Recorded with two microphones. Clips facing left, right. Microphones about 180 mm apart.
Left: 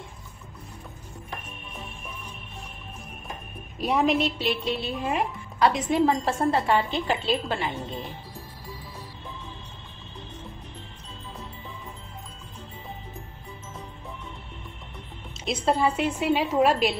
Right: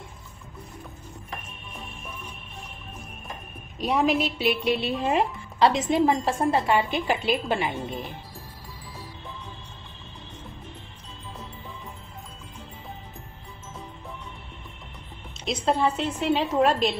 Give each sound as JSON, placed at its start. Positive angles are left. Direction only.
{"t": 3.8, "sound": "a woman's voice", "side_deg": 0}
{"t": 4.6, "sound": "a woman's voice", "side_deg": -20}
{"t": 15.4, "sound": "a woman's voice", "side_deg": 5}